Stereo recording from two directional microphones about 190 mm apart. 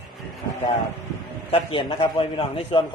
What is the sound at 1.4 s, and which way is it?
A man's voice, 30° left (ahead or behind).